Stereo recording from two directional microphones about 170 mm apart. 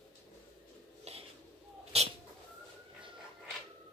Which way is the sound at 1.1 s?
40° right (ahead or behind).